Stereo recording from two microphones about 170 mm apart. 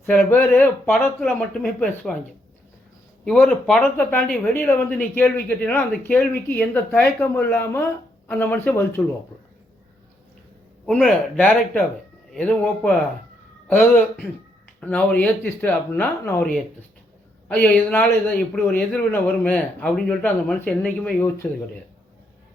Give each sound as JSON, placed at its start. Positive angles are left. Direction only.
{"t": 0.3, "sound": "speech", "side_deg": 10}
{"t": 3.2, "sound": "speech", "side_deg": 5}
{"t": 10.8, "sound": "speech", "side_deg": 5}